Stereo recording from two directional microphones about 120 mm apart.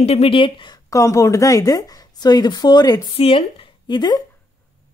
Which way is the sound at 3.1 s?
50° left (ahead or behind).